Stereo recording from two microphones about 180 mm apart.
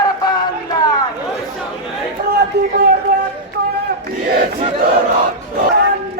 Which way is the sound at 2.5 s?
65° right (ahead or behind).